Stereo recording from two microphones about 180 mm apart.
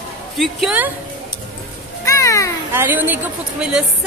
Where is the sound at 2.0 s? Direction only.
15° left (ahead or behind).